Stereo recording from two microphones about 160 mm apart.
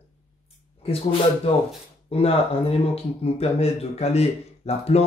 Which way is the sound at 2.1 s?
40° left (ahead or behind).